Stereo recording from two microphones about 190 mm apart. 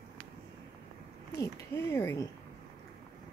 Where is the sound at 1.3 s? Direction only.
15° left (ahead or behind).